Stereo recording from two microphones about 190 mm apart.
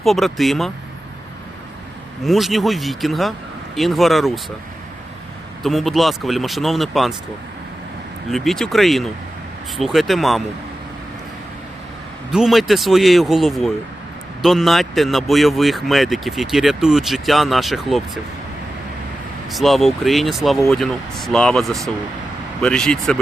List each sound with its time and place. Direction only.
0.0 s speech: centre (ahead or behind)
2.2 s speech: centre (ahead or behind)
5.6 s speech: centre (ahead or behind)
8.3 s speech: centre (ahead or behind)
12.3 s speech: centre (ahead or behind)
19.5 s speech: centre (ahead or behind)